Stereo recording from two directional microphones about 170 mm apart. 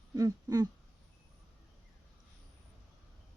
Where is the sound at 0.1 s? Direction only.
20° right (ahead or behind).